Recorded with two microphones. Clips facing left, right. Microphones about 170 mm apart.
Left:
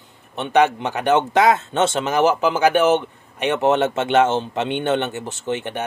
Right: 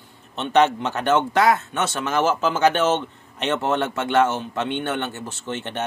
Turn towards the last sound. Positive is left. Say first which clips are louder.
# left 4 dB
turn(degrees=15)  # may be behind; listen again after turning